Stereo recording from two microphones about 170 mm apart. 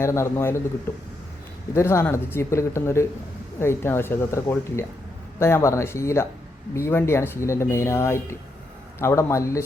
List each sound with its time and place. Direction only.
0.0 s speech: 15° left (ahead or behind)
1.7 s speech: 15° left (ahead or behind)